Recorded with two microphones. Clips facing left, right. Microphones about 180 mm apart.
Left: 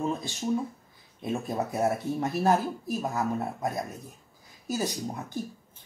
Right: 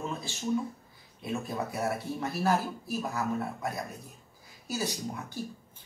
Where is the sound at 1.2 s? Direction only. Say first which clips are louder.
Left 3 dB; 35° left (ahead or behind).